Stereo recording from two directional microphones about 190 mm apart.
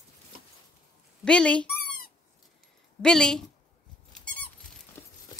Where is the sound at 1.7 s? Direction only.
50° left (ahead or behind).